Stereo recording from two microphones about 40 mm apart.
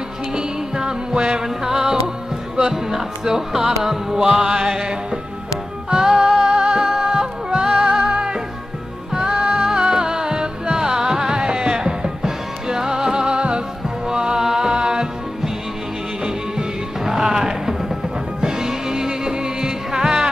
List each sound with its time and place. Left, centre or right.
0.3 s music: centre
6.8 s music: centre
8.0 s music: right
9.1 s music: centre